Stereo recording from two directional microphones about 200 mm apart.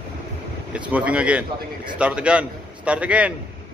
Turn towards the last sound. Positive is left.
turn(degrees=-5)  # may be behind; listen again after turning